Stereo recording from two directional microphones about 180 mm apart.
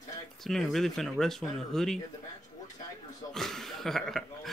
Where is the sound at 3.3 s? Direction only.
Centre (ahead or behind).